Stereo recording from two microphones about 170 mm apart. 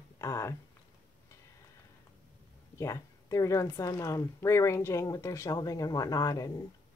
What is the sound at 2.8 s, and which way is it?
Speech, 20° left (ahead or behind).